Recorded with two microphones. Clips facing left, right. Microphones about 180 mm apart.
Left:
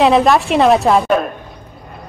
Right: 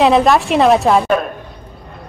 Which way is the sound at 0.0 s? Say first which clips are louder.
Even; centre (ahead or behind).